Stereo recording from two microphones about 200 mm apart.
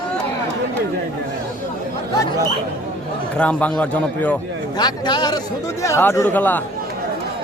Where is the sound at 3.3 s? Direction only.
5° left (ahead or behind).